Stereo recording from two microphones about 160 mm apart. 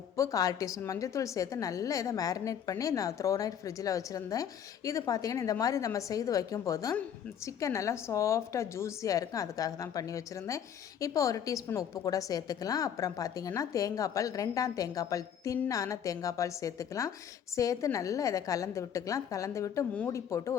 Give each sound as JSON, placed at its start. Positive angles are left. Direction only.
{"t": 0.2, "sound": "a woman's voice", "side_deg": 20}